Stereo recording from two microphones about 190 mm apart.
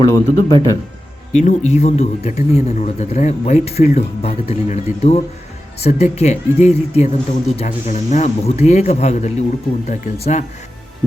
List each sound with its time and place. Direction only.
0.0 s speech: 20° left (ahead or behind)
1.3 s speech: 40° left (ahead or behind)